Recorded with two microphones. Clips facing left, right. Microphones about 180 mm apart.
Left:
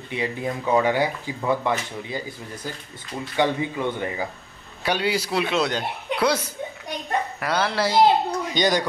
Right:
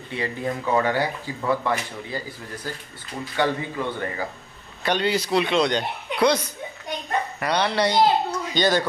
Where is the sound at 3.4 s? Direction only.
15° left (ahead or behind).